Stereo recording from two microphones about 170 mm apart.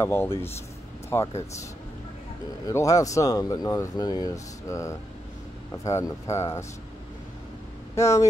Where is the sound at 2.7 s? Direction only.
20° left (ahead or behind).